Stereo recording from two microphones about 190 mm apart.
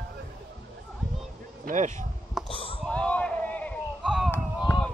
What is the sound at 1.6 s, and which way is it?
Speech, 40° right (ahead or behind).